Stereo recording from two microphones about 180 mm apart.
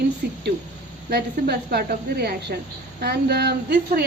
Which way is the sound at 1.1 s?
60° right (ahead or behind).